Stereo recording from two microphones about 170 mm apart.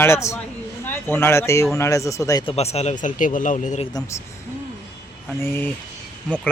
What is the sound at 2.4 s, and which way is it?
Speech, 40° left (ahead or behind).